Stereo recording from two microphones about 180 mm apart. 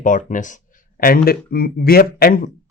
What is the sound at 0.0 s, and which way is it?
Speech, 45° left (ahead or behind).